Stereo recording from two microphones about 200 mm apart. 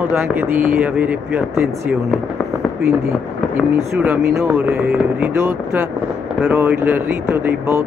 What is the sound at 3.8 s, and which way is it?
Speech, 10° right (ahead or behind).